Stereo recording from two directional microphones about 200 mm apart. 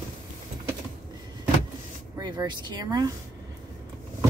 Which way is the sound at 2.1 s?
20° right (ahead or behind).